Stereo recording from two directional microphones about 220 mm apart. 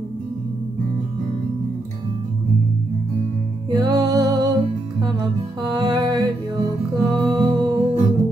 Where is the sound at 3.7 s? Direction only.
20° right (ahead or behind).